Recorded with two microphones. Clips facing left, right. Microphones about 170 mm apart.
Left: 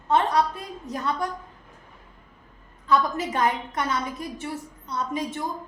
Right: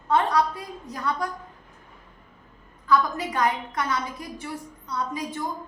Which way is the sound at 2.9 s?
25° left (ahead or behind).